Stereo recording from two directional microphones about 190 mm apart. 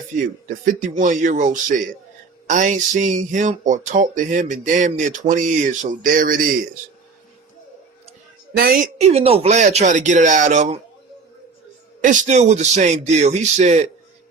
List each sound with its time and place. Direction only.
0.4 s speech: 40° right (ahead or behind)
8.5 s a woman's voice: 50° right (ahead or behind)
9.0 s speech: 35° right (ahead or behind)
12.0 s speech: 40° right (ahead or behind)